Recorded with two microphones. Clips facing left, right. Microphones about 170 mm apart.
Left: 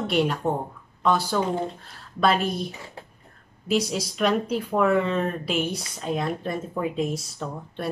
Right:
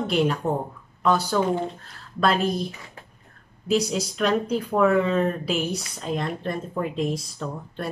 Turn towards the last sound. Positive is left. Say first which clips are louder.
# right 1 dB
turn(degrees=0)  # may be behind; listen again after turning